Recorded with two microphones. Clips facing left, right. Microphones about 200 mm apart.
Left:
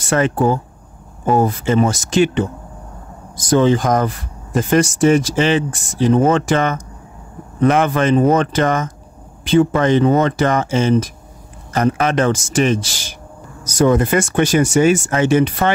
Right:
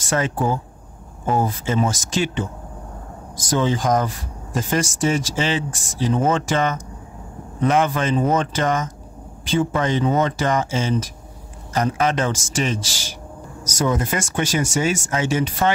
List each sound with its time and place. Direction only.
0.0 s speech: 65° left (ahead or behind)
3.4 s speech: 60° left (ahead or behind)